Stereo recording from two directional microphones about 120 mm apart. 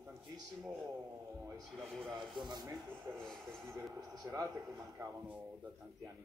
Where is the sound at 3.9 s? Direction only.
30° right (ahead or behind).